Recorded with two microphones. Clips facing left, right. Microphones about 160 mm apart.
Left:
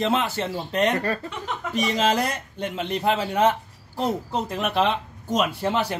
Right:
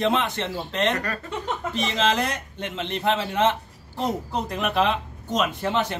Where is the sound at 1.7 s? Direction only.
10° left (ahead or behind).